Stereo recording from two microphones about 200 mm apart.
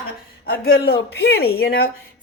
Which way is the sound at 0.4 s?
50° left (ahead or behind).